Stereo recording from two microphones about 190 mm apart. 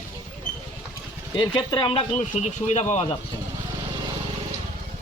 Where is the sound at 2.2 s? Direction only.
35° left (ahead or behind).